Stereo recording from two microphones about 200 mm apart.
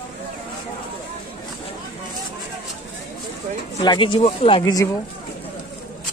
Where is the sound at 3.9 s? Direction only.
25° left (ahead or behind).